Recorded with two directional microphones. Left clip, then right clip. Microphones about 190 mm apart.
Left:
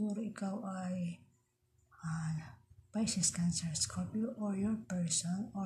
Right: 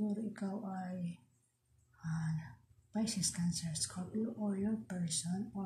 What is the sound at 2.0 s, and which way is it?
Speech, 35° left (ahead or behind).